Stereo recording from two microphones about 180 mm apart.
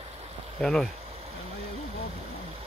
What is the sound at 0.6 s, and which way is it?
Speech, 5° left (ahead or behind).